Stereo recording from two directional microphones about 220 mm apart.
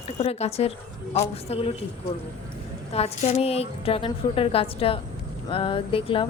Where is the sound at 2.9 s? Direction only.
30° left (ahead or behind).